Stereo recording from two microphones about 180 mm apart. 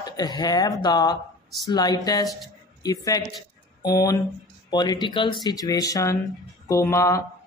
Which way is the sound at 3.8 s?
20° left (ahead or behind).